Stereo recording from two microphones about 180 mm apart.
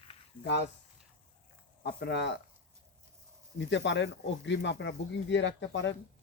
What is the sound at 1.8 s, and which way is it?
Speech, 65° left (ahead or behind).